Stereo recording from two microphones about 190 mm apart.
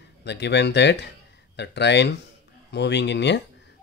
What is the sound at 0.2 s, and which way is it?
Speech, 65° left (ahead or behind).